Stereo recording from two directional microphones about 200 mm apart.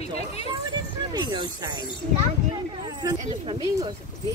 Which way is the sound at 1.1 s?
20° right (ahead or behind).